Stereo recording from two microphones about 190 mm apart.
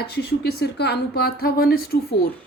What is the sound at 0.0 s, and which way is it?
Speech, 60° left (ahead or behind).